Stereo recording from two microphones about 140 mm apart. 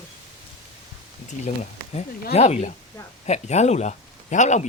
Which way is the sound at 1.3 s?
55° left (ahead or behind).